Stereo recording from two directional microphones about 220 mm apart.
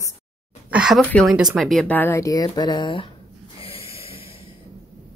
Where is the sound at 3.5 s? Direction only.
25° left (ahead or behind).